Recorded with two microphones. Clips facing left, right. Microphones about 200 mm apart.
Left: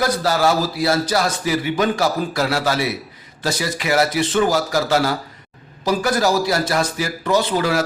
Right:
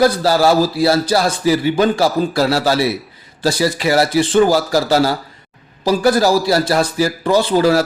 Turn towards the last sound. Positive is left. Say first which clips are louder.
# right 5 dB
turn(degrees=-30)  # may be behind; listen again after turning